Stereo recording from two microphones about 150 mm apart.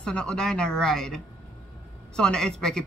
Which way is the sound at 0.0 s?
5° left (ahead or behind).